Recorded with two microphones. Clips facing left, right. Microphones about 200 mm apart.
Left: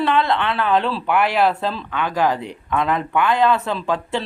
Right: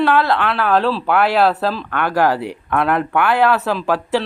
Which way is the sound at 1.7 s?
75° right (ahead or behind).